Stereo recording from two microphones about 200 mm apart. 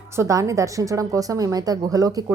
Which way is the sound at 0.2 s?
15° right (ahead or behind).